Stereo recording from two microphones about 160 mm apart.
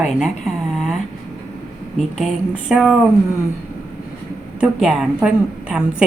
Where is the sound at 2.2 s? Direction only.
Centre (ahead or behind).